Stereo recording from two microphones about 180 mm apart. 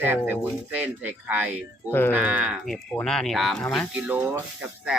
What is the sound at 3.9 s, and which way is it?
Speech, 10° right (ahead or behind).